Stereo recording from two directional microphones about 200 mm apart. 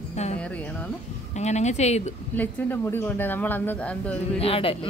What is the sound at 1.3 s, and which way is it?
Speech, 35° left (ahead or behind).